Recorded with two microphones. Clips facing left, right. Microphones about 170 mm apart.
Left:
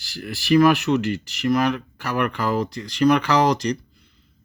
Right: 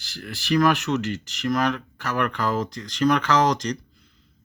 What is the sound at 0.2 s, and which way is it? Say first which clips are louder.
Speech: left 5 dB; 5° left (ahead or behind).